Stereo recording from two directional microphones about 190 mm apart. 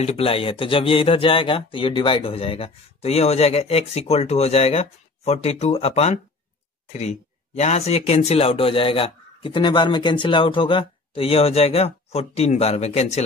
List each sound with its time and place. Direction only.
0.0 s speech: 30° left (ahead or behind)